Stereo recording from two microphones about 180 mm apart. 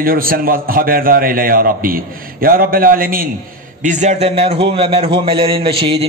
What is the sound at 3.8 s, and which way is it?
A man's voice, 40° right (ahead or behind).